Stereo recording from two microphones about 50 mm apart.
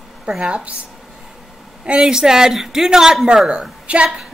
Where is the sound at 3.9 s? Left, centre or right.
Right.